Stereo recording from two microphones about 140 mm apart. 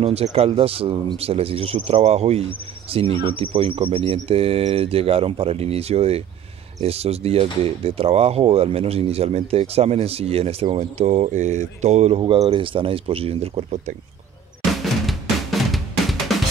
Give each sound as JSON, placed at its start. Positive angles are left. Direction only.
{"t": 0.0, "sound": "speech", "side_deg": -50}
{"t": 15.0, "sound": "drum", "side_deg": 0}